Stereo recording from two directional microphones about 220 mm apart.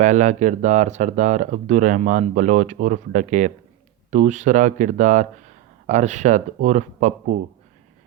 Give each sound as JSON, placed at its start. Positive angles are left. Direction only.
{"t": 0.0, "sound": "speech", "side_deg": -35}